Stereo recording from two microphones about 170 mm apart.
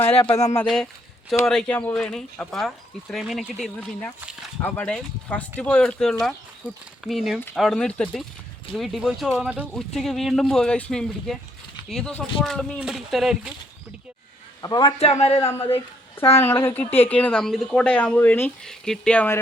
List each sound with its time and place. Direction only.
0.1 s a man's voice: 35° left (ahead or behind)
0.5 s speech: 5° left (ahead or behind)
14.6 s a man's voice: 25° left (ahead or behind)
16.3 s speech: 15° left (ahead or behind)